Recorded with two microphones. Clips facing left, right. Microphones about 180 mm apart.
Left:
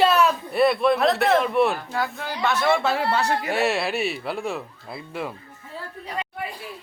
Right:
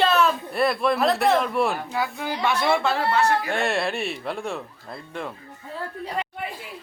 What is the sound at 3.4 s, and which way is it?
Speech, 5° left (ahead or behind).